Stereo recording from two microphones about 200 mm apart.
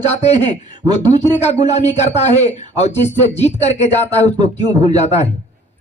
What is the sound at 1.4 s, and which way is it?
Speech, 35° left (ahead or behind).